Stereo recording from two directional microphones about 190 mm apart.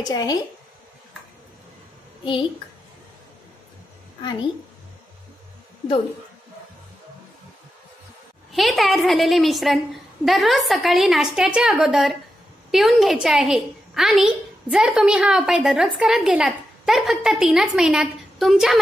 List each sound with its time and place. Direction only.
0.0 s a woman's voice: 20° left (ahead or behind)
4.2 s a woman's voice: 25° left (ahead or behind)
8.5 s a woman's voice: centre (ahead or behind)